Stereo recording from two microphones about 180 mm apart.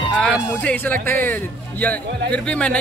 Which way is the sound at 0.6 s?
10° left (ahead or behind).